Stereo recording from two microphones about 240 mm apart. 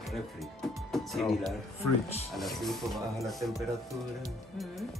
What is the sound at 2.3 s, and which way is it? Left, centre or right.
Speech, centre.